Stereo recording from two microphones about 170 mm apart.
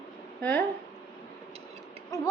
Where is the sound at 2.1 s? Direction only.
20° left (ahead or behind).